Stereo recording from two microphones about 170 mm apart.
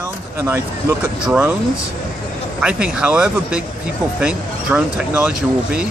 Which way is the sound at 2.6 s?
5° right (ahead or behind).